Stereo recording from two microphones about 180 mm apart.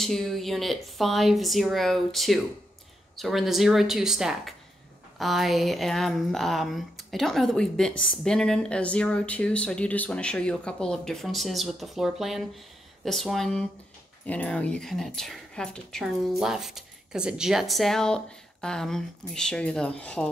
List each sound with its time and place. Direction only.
0.0 s speech: centre (ahead or behind)